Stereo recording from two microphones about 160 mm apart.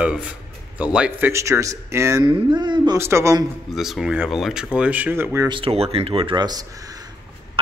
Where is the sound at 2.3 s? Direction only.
30° right (ahead or behind).